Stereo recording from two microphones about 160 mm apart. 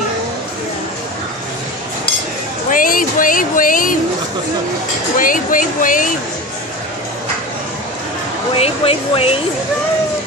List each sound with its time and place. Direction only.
2.7 s speech: 60° left (ahead or behind)
5.2 s speech: 55° left (ahead or behind)
8.5 s speech: 35° left (ahead or behind)